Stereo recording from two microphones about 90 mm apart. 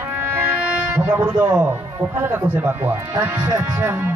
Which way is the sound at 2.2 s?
25° right (ahead or behind).